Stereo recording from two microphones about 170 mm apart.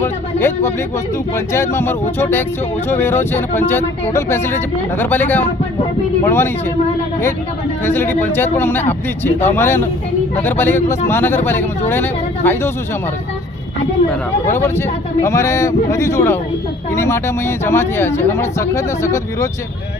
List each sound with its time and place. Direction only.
0.0 s speech: 15° left (ahead or behind)
7.9 s speech: 15° left (ahead or behind)
14.4 s speech: 15° left (ahead or behind)